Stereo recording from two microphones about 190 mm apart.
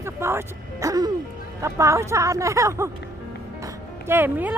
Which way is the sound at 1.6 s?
15° right (ahead or behind).